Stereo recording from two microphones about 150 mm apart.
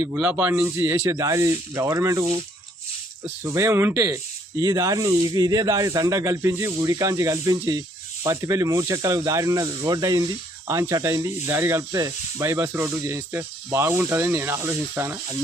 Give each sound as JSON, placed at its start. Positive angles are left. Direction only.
{"t": 0.0, "sound": "speech", "side_deg": -10}
{"t": 3.4, "sound": "speech", "side_deg": -20}